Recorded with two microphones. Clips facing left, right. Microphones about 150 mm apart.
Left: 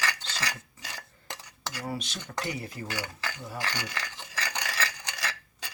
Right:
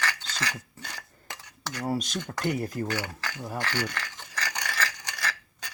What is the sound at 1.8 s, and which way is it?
Cutlery, 40° right (ahead or behind).